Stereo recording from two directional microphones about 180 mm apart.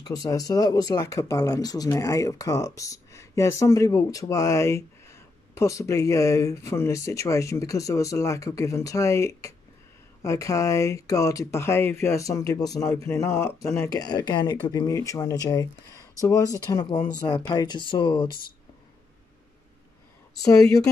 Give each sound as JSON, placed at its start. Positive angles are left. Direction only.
{"t": 0.0, "sound": "speech", "side_deg": 20}
{"t": 20.4, "sound": "speech", "side_deg": 20}